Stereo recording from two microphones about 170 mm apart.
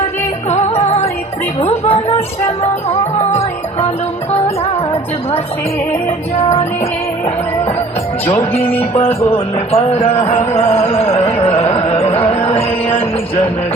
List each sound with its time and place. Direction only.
0.5 s music: 40° left (ahead or behind)
1.6 s a sound: 35° left (ahead or behind)
6.1 s music: 35° left (ahead or behind)
8.3 s music: 35° left (ahead or behind)
11.4 s carnatic music: 35° left (ahead or behind)
12.1 s music: 35° left (ahead or behind)